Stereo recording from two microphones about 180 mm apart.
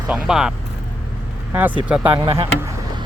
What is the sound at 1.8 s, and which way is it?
Speech, 5° right (ahead or behind).